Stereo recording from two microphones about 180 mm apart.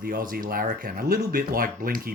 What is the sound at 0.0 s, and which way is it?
Speech, 50° right (ahead or behind).